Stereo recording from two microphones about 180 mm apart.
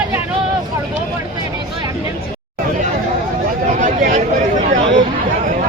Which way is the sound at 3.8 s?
40° right (ahead or behind).